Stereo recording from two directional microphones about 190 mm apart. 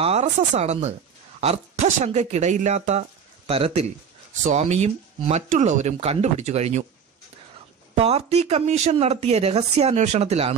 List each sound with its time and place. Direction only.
0.0 s speech: 35° right (ahead or behind)
7.9 s speech: 35° right (ahead or behind)